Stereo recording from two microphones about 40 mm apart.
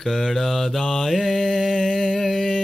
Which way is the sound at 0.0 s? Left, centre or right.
Centre.